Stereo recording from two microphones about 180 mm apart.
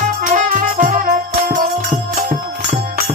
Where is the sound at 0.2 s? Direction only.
45° right (ahead or behind).